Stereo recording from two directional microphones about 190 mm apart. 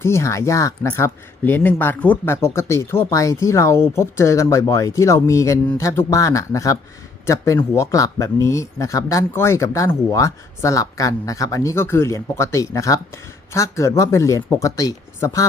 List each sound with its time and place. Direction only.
0.0 s speech: 15° left (ahead or behind)